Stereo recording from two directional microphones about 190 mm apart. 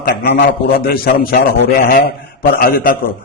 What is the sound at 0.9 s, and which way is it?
A man's voice, 50° left (ahead or behind).